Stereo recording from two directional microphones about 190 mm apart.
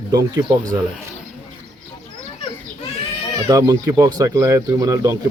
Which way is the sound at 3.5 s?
20° right (ahead or behind).